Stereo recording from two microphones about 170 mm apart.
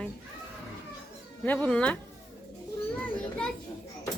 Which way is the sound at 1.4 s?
5° left (ahead or behind).